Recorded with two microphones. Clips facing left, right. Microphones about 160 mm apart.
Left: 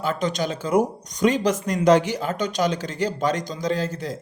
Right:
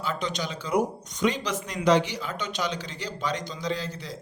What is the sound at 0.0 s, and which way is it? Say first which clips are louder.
Speech: left 6 dB; 45° left (ahead or behind).